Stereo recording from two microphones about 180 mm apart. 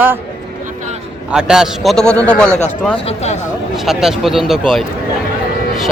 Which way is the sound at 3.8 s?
Centre (ahead or behind).